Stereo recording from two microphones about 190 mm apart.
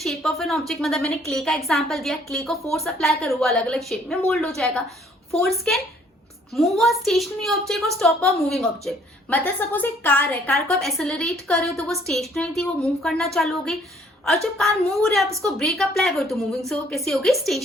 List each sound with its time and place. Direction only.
0.0 s a woman's voice: centre (ahead or behind)
14.7 s a woman's voice: 15° right (ahead or behind)
15.0 s a woman's voice: centre (ahead or behind)